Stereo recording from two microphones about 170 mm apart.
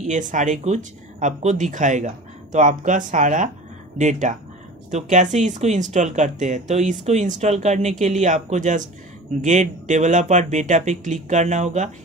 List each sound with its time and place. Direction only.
0.0 s speech: 50° right (ahead or behind)